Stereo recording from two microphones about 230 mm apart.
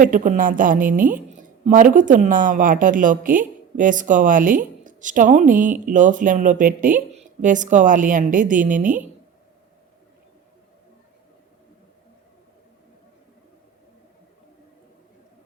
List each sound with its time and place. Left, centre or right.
0.0 s a woman's voice: right